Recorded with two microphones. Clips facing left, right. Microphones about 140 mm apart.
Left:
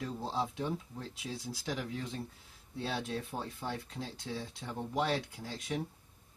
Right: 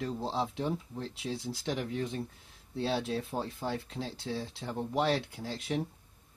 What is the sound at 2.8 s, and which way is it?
Speech, 30° right (ahead or behind).